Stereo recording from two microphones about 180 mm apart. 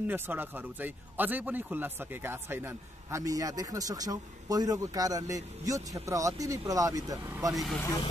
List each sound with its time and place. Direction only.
0.0 s speech: 10° right (ahead or behind)